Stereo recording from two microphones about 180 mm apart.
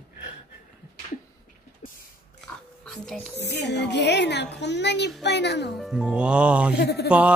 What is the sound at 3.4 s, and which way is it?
A woman's voice, 70° left (ahead or behind).